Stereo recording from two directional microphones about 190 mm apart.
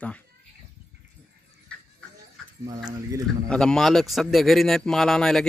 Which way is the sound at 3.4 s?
5° left (ahead or behind).